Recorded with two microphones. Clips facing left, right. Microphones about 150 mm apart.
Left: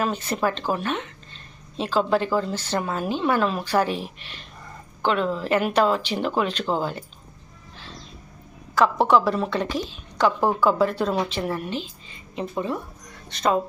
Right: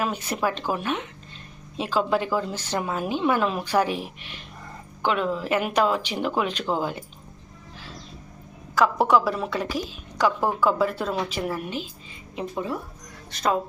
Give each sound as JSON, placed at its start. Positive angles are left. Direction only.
{"t": 0.0, "sound": "a woman's voice", "side_deg": -10}
{"t": 8.7, "sound": "a woman's voice", "side_deg": -5}